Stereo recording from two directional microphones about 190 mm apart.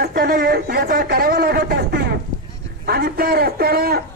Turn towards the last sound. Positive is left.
turn(degrees=-55)  # may be behind; listen again after turning